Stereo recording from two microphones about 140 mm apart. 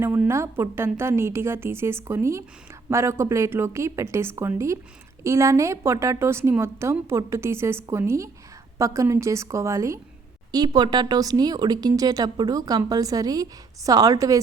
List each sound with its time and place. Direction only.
0.0 s a woman's voice: 15° right (ahead or behind)